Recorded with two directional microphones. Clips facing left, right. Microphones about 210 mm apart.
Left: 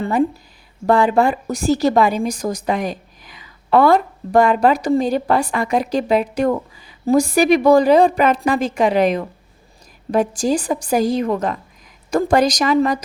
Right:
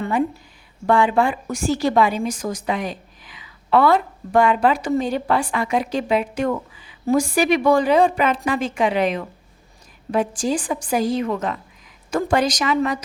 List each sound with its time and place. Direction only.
0.0 s a woman's voice: 35° left (ahead or behind)